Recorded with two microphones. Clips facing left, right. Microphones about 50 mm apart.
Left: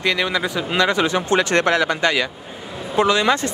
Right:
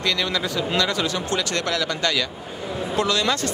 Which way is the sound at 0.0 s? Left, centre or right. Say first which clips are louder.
Left 4 dB; left.